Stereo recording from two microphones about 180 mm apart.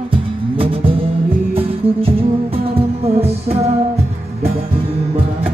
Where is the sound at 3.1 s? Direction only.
35° right (ahead or behind).